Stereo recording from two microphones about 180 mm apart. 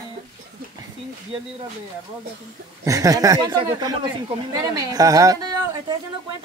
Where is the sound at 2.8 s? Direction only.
20° right (ahead or behind).